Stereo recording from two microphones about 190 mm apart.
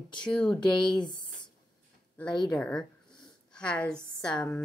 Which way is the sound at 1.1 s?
25° left (ahead or behind).